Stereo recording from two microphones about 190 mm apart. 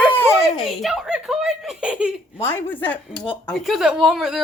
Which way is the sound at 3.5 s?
Centre (ahead or behind).